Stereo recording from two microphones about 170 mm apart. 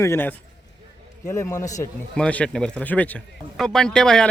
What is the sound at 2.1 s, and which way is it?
Speech, 5° left (ahead or behind).